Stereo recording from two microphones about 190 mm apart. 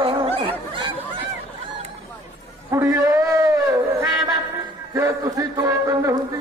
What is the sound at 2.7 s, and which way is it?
Speech, 15° right (ahead or behind).